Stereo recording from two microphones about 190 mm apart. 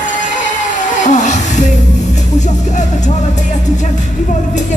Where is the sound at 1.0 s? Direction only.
40° left (ahead or behind).